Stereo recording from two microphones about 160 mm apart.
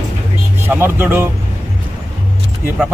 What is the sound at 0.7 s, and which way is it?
Speech, 15° right (ahead or behind).